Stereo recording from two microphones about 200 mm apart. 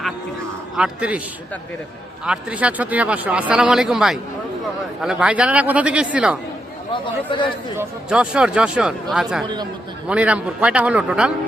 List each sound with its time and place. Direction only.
0.8 s a man's voice: 5° right (ahead or behind)
2.2 s speech: 5° right (ahead or behind)
6.9 s speech: 25° left (ahead or behind)
7.8 s speech: 5° right (ahead or behind)